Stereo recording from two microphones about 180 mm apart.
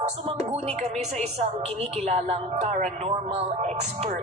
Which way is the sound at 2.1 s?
35° right (ahead or behind).